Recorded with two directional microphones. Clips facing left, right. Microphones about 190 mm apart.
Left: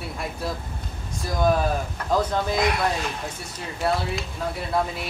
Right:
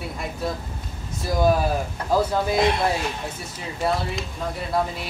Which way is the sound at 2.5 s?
25° right (ahead or behind).